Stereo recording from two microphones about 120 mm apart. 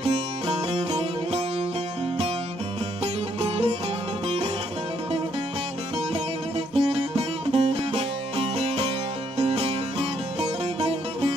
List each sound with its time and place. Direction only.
0.0 s music: 55° right (ahead or behind)
3.3 s music: 50° right (ahead or behind)
6.7 s music: 60° right (ahead or behind)